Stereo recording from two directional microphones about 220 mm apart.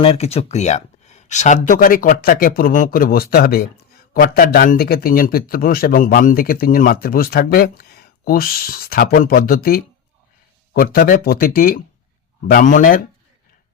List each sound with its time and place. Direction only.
0.0 s speech: 25° left (ahead or behind)